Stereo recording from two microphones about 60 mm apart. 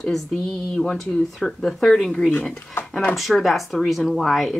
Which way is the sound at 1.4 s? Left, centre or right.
Centre.